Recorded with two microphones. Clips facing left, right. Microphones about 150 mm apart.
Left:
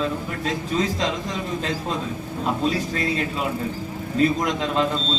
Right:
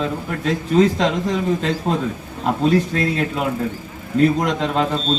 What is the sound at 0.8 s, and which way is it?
Speech, 60° right (ahead or behind).